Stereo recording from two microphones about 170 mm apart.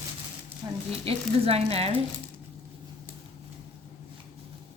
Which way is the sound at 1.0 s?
35° right (ahead or behind).